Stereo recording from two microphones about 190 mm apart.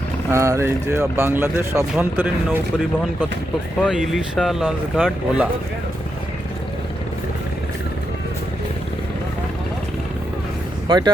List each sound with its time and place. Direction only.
0.3 s speech: 15° right (ahead or behind)
3.8 s speech: centre (ahead or behind)
10.8 s speech: 20° right (ahead or behind)